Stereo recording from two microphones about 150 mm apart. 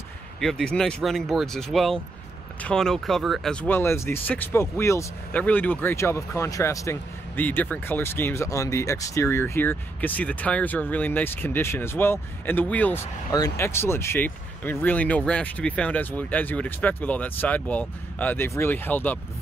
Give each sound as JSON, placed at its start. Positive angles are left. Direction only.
{"t": 0.4, "sound": "speech", "side_deg": 5}
{"t": 3.7, "sound": "speech", "side_deg": 15}
{"t": 13.3, "sound": "speech", "side_deg": 20}